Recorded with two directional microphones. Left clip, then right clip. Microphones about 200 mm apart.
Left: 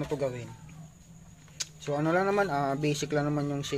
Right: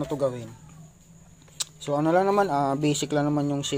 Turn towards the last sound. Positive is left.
turn(degrees=-20)  # may be behind; listen again after turning